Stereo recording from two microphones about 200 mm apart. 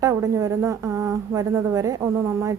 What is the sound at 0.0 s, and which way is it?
A woman's voice, 15° right (ahead or behind).